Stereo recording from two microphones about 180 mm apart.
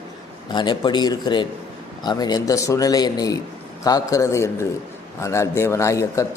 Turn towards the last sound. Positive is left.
turn(degrees=15)  # may be behind; listen again after turning